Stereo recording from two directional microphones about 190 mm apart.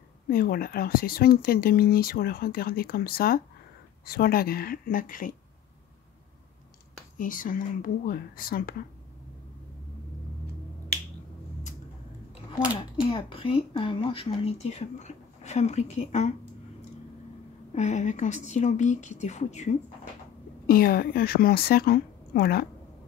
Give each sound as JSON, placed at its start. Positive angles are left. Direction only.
{"t": 0.3, "sound": "speech", "side_deg": 50}
{"t": 7.2, "sound": "speech", "side_deg": 45}
{"t": 13.1, "sound": "speech", "side_deg": 30}
{"t": 17.7, "sound": "speech", "side_deg": 40}
{"t": 20.6, "sound": "speech", "side_deg": 50}